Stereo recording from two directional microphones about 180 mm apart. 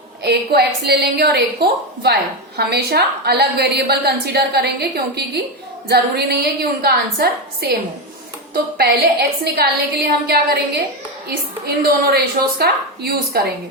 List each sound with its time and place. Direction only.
0.2 s a woman's voice: 65° right (ahead or behind)
8.8 s a woman's voice: 60° right (ahead or behind)
11.6 s a woman's voice: 60° right (ahead or behind)